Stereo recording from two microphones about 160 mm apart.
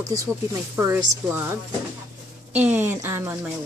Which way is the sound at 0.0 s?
20° right (ahead or behind).